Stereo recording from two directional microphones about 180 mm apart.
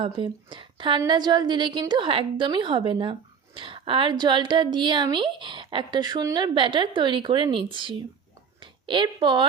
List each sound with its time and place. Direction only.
0.0 s a woman's voice: 30° right (ahead or behind)